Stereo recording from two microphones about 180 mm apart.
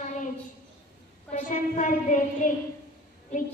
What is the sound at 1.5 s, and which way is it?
Child singing, 45° left (ahead or behind).